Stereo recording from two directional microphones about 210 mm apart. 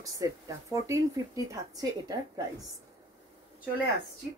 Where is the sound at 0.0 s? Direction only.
15° right (ahead or behind).